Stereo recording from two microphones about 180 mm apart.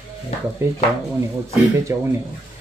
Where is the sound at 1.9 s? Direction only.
15° right (ahead or behind).